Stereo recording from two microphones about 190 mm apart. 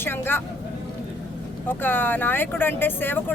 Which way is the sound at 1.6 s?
10° left (ahead or behind).